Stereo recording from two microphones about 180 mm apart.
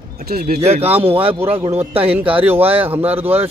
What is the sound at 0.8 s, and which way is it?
Speech, 10° right (ahead or behind).